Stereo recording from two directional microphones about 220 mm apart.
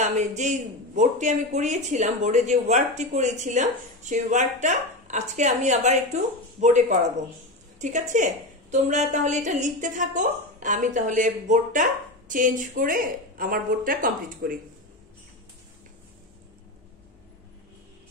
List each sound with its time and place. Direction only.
0.0 s a woman's voice: 35° right (ahead or behind)